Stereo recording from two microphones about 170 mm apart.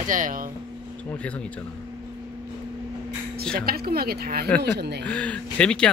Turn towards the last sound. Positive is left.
turn(degrees=5)  # may be behind; listen again after turning